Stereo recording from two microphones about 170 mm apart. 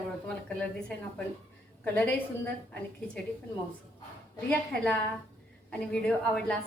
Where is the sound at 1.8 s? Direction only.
10° left (ahead or behind).